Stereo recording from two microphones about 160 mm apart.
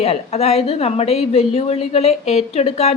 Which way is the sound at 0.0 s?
40° left (ahead or behind).